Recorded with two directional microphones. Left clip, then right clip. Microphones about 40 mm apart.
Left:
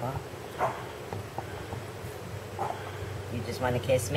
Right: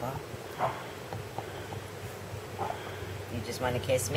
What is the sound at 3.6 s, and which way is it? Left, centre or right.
Speech, centre.